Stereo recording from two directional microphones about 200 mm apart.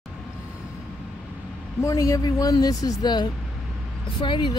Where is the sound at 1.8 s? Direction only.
15° left (ahead or behind).